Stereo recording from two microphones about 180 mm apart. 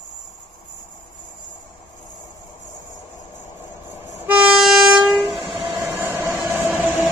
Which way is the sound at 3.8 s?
10° right (ahead or behind).